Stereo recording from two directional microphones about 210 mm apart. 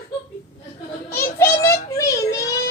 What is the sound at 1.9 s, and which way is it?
Child singing, 15° left (ahead or behind).